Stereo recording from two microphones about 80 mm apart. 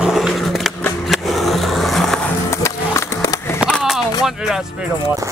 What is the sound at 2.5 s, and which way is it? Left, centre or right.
Music, left.